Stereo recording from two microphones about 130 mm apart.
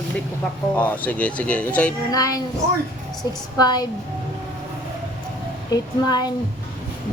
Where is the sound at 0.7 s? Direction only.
10° left (ahead or behind).